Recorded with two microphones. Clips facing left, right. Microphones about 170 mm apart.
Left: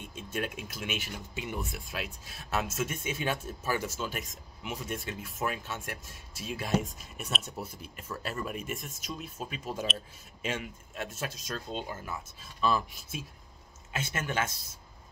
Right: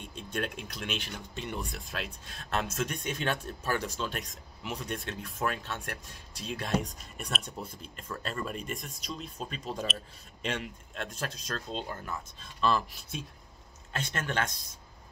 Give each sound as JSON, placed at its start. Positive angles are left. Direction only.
{"t": 0.0, "sound": "speech", "side_deg": 5}